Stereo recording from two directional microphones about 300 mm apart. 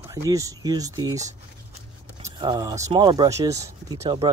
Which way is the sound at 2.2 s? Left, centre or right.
Centre.